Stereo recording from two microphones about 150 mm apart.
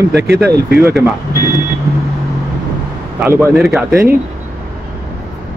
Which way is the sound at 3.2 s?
15° right (ahead or behind).